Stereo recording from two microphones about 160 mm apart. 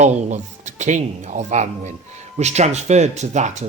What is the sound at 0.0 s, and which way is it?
Speech, 45° right (ahead or behind).